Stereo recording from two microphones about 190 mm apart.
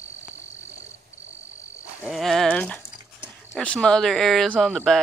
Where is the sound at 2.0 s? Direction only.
Centre (ahead or behind).